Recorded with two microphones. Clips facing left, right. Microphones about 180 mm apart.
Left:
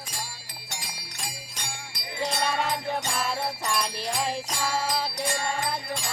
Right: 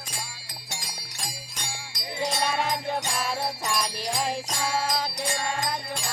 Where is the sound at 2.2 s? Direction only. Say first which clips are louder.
Even; 5° right (ahead or behind).